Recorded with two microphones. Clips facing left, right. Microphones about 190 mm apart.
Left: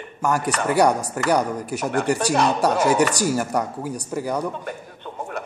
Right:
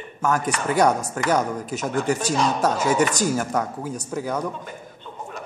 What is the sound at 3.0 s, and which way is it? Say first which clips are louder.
Speech: left 1 dB; 10° left (ahead or behind).